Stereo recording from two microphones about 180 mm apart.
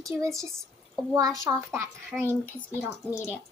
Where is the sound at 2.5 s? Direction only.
10° left (ahead or behind).